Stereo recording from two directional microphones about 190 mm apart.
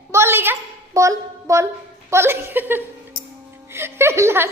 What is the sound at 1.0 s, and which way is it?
A woman's voice, 15° right (ahead or behind).